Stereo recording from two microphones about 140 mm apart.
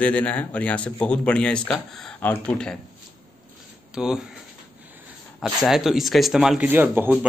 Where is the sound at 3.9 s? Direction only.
5° right (ahead or behind).